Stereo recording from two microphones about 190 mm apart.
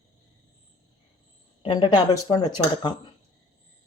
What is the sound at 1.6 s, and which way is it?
Speech, 25° left (ahead or behind).